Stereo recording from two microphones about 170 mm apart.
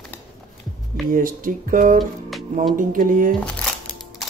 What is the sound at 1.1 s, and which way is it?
Speech, 55° right (ahead or behind).